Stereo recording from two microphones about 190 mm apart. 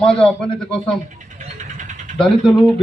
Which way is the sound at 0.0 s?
5° left (ahead or behind).